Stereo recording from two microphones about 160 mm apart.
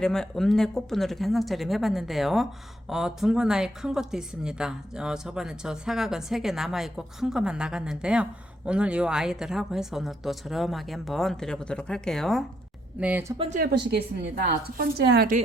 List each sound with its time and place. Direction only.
0.0 s speech: 5° left (ahead or behind)
13.0 s speech: 10° right (ahead or behind)
14.4 s a woman's voice: 90° right